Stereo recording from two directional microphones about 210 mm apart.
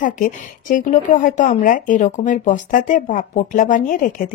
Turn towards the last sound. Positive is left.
turn(degrees=40)  # may be behind; listen again after turning